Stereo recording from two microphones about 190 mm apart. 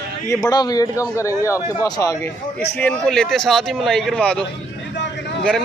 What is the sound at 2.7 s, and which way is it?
Speech, 5° left (ahead or behind).